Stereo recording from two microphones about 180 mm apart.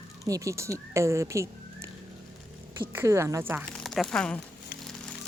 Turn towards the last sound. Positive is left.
turn(degrees=5)  # may be behind; listen again after turning